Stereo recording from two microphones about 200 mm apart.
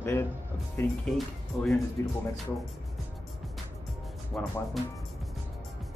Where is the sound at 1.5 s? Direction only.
Centre (ahead or behind).